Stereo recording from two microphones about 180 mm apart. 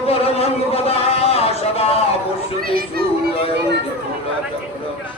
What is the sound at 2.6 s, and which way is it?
Speech, 55° right (ahead or behind).